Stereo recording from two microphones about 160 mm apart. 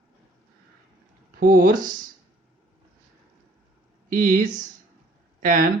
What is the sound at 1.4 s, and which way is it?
Speech, 60° right (ahead or behind).